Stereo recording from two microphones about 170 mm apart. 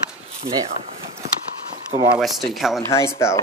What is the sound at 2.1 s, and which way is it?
Speech, centre (ahead or behind).